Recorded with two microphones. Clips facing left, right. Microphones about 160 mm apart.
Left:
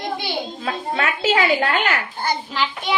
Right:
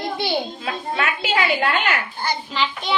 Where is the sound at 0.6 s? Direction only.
40° left (ahead or behind).